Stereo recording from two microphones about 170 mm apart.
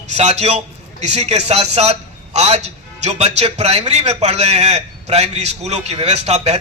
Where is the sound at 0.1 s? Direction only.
40° right (ahead or behind).